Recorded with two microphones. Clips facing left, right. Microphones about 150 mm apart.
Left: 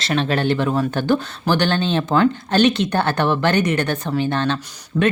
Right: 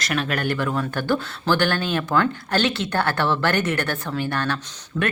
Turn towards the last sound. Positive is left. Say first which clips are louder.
# left 6 dB
turn(degrees=10)  # may be behind; listen again after turning